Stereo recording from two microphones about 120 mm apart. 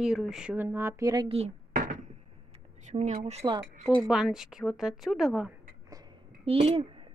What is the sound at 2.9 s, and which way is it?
Speech, 65° right (ahead or behind).